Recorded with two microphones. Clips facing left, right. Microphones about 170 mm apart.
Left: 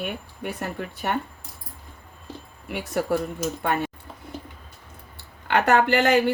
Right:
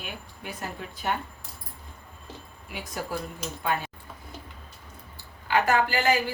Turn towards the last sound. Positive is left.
turn(degrees=65)  # may be behind; listen again after turning